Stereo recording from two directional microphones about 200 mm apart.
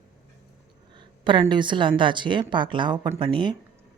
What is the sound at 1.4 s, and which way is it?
Speech, 25° right (ahead or behind).